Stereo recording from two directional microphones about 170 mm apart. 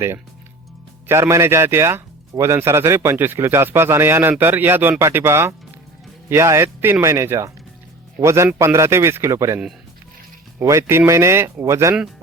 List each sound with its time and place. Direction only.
1.0 s speech: 15° right (ahead or behind)
10.6 s speech: 15° right (ahead or behind)